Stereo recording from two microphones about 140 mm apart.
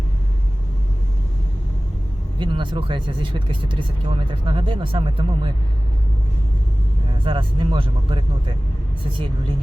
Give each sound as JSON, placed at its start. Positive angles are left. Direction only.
{"t": 2.4, "sound": "speech", "side_deg": -35}
{"t": 7.3, "sound": "speech", "side_deg": -35}